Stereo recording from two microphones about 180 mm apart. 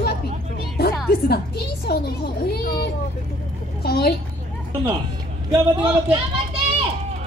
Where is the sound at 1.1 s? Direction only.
65° left (ahead or behind).